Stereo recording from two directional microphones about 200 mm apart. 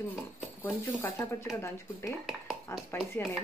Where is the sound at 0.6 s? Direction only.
10° left (ahead or behind).